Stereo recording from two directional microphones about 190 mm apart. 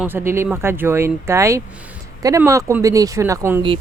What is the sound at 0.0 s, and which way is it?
Speech, 10° right (ahead or behind).